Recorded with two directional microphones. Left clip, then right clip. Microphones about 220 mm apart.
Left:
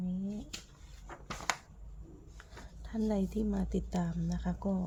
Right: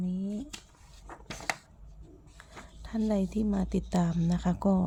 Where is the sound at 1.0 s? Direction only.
25° right (ahead or behind).